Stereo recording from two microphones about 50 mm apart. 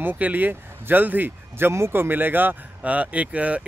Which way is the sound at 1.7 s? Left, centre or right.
Right.